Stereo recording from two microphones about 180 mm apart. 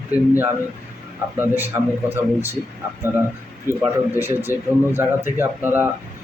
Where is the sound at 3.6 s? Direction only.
15° right (ahead or behind).